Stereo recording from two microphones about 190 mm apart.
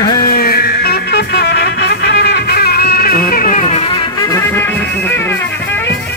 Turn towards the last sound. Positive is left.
turn(degrees=10)  # may be behind; listen again after turning